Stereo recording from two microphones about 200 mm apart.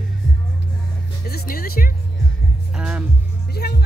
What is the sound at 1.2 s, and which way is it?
Music, 50° left (ahead or behind).